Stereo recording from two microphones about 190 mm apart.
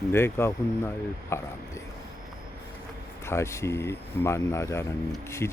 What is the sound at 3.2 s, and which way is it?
Speech, 15° left (ahead or behind).